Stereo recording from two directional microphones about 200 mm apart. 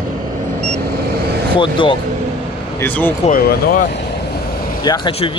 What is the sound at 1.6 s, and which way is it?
Speech, 25° left (ahead or behind).